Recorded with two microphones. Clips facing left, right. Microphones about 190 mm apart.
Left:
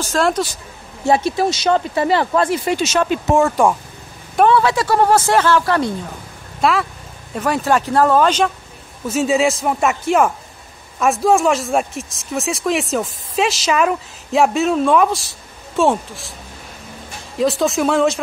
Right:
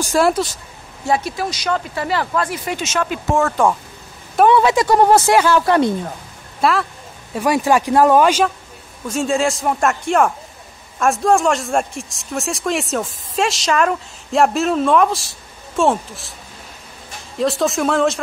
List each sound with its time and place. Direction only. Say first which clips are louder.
0.0 s speech: right 2 dB; 10° right (ahead or behind)
1.0 s speech: left 4 dB; 25° left (ahead or behind)
3.3 s speech: left 1 dB; 10° left (ahead or behind)
4.5 s speech: right 3 dB; 20° right (ahead or behind)
6.6 s speech: even; centre (ahead or behind)
7.3 s speech: right 2 dB; 10° right (ahead or behind)
9.0 s speech: left 2 dB; 5° left (ahead or behind)
17.4 s speech: left 1 dB; centre (ahead or behind)